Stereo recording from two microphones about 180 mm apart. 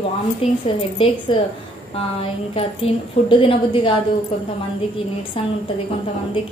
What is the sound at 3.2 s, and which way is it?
Speech, 30° left (ahead or behind).